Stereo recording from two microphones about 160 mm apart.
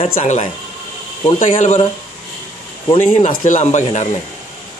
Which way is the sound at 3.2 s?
50° left (ahead or behind).